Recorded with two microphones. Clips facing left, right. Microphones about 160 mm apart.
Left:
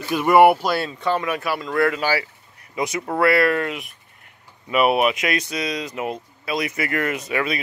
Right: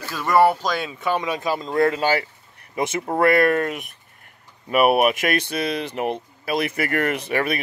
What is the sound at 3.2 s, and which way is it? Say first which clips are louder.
Speech: right 1 dB; 45° right (ahead or behind).